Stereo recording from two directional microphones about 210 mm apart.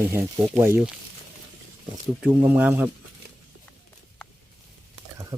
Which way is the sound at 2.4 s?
10° right (ahead or behind).